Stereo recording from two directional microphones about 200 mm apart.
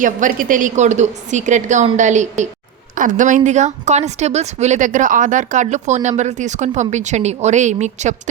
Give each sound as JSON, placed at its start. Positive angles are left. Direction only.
{"t": 0.0, "sound": "a woman's voice", "side_deg": -40}